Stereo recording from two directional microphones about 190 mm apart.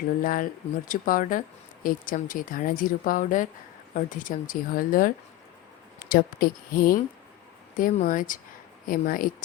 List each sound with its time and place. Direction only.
0.2 s a woman's voice: 45° left (ahead or behind)